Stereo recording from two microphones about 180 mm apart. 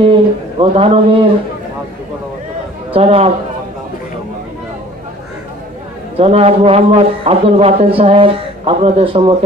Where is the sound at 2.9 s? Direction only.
30° right (ahead or behind).